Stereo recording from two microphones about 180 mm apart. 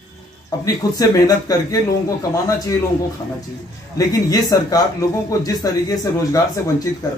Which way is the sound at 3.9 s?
20° left (ahead or behind).